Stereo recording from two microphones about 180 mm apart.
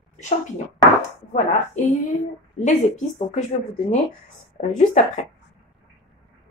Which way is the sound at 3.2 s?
40° left (ahead or behind).